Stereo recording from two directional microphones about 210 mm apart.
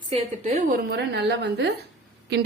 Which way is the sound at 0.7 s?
55° right (ahead or behind).